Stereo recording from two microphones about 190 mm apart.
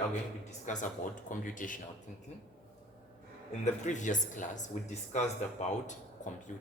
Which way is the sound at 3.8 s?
40° left (ahead or behind).